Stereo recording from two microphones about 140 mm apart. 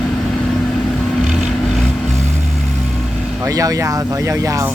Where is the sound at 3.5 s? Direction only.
25° right (ahead or behind).